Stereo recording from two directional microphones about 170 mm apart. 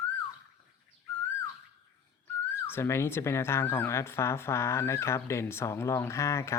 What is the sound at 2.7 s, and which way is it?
Speech, 15° left (ahead or behind).